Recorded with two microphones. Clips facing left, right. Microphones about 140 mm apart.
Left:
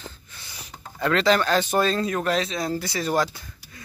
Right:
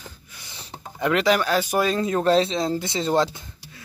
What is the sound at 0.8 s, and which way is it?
Speech, 15° right (ahead or behind).